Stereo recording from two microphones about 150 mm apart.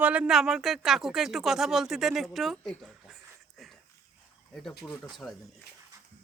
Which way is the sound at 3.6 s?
Centre (ahead or behind).